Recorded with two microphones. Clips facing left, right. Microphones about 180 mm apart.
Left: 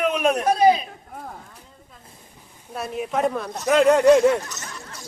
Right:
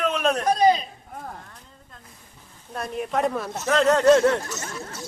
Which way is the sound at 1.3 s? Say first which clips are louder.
Even; 5° left (ahead or behind).